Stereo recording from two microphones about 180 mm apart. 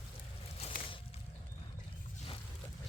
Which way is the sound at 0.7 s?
50° left (ahead or behind).